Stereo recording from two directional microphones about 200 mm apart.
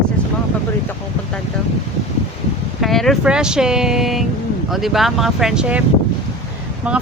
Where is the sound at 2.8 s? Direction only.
Centre (ahead or behind).